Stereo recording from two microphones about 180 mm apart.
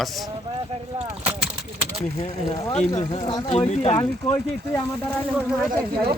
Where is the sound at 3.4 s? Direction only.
35° left (ahead or behind).